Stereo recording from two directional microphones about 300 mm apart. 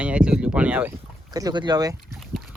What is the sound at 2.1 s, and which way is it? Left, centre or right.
Boat, centre.